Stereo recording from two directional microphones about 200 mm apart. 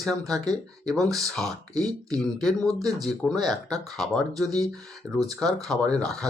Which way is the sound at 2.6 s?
15° right (ahead or behind).